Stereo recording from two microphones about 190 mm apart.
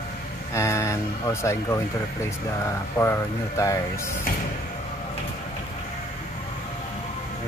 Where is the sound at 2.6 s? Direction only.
15° left (ahead or behind).